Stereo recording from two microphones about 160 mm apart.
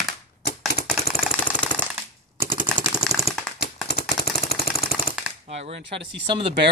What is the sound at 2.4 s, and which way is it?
Machine gun, 15° right (ahead or behind).